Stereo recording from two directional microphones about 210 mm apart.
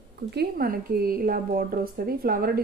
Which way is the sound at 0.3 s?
50° right (ahead or behind).